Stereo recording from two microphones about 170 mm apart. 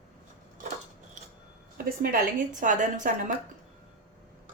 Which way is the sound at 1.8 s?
55° right (ahead or behind).